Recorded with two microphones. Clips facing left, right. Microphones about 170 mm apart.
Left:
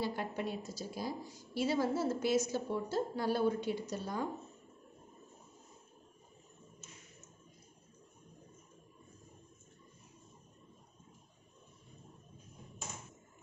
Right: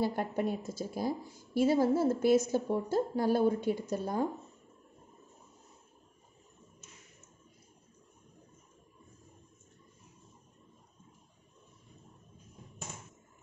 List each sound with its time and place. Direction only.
0.0 s a woman's voice: 50° right (ahead or behind)